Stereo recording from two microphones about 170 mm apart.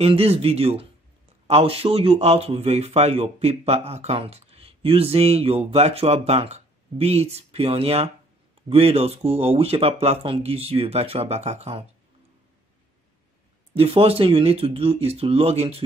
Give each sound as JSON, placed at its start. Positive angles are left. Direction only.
{"t": 0.0, "sound": "speech", "side_deg": -35}
{"t": 13.7, "sound": "speech", "side_deg": -35}